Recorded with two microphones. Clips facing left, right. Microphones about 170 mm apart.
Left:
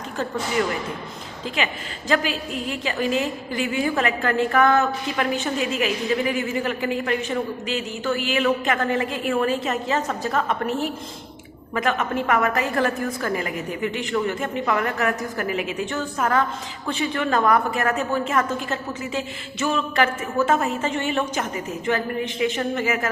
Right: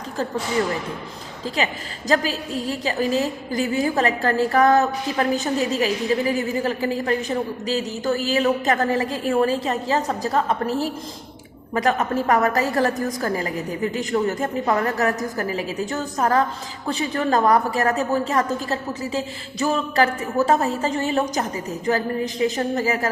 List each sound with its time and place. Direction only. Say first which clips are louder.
1.5 s a woman's voice: right 2 dB; 35° right (ahead or behind)